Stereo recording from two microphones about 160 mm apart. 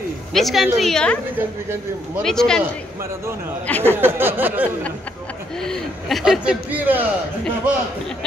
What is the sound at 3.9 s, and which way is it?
Speech, 15° right (ahead or behind).